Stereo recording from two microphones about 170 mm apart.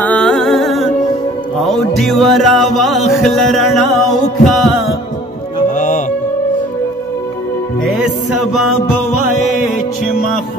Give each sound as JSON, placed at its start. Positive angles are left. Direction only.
{"t": 0.0, "sound": "music", "side_deg": 5}
{"t": 5.8, "sound": "music", "side_deg": 50}
{"t": 8.0, "sound": "music", "side_deg": -5}